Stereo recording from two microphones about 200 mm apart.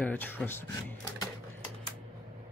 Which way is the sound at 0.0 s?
10° left (ahead or behind).